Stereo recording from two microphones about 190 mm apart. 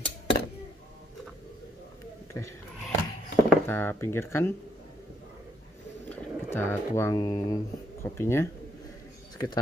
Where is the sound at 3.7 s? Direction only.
10° left (ahead or behind).